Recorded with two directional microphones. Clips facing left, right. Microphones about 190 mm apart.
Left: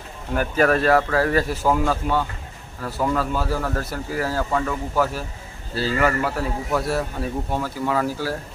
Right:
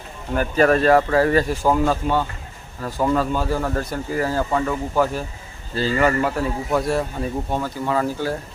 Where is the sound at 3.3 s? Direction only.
5° left (ahead or behind).